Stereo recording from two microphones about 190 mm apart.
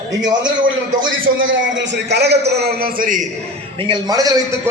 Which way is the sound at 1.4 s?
80° right.